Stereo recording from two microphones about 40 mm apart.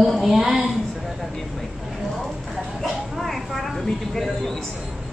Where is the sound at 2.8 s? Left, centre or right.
Centre.